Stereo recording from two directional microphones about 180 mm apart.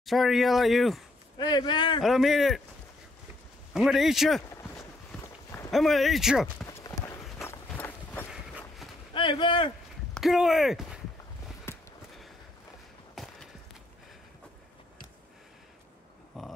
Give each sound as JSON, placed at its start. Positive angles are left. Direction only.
{"t": 0.0, "sound": "speech", "side_deg": 0}
{"t": 1.4, "sound": "speech", "side_deg": 20}
{"t": 2.0, "sound": "speech", "side_deg": 0}
{"t": 3.7, "sound": "a sound", "side_deg": 0}
{"t": 5.7, "sound": "speech", "side_deg": 0}
{"t": 6.7, "sound": "clip-clop", "side_deg": 15}
{"t": 7.4, "sound": "run", "side_deg": 10}
{"t": 8.3, "sound": "walk", "side_deg": -5}
{"t": 9.1, "sound": "speech", "side_deg": 30}
{"t": 10.1, "sound": "speech", "side_deg": 0}
{"t": 11.7, "sound": "a sound", "side_deg": 15}
{"t": 13.1, "sound": "a sound", "side_deg": 0}
{"t": 16.3, "sound": "a sound", "side_deg": 0}